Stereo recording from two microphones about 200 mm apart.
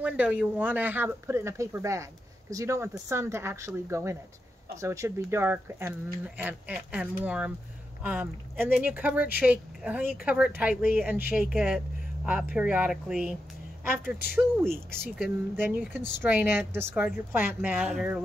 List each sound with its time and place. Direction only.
0.0 s speech: 5° right (ahead or behind)